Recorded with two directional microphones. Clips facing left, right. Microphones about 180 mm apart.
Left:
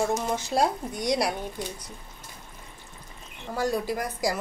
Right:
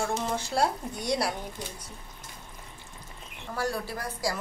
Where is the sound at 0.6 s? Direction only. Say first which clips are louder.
Left 2 dB; 15° left (ahead or behind).